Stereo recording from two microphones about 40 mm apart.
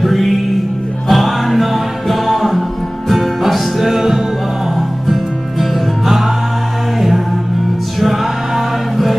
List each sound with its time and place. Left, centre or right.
0.0 s music: centre
8.0 s choir: centre